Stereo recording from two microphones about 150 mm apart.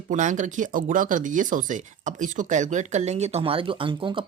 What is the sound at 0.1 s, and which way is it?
Speech, 55° right (ahead or behind).